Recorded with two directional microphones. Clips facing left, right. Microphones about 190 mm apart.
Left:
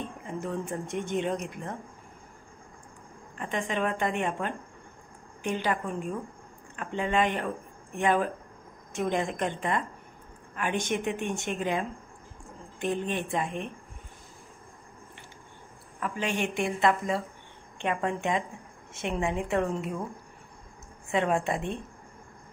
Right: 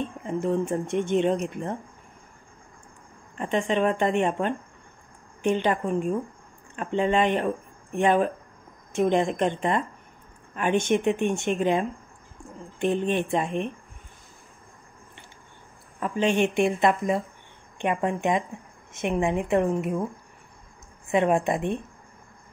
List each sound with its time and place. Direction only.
0.4 s speech: 25° right (ahead or behind)
3.3 s speech: 25° right (ahead or behind)
12.8 s speech: 25° right (ahead or behind)
16.0 s speech: 25° right (ahead or behind)
21.1 s speech: 20° right (ahead or behind)